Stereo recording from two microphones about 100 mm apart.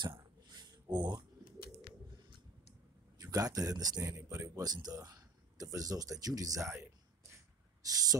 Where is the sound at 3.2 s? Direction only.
35° right (ahead or behind).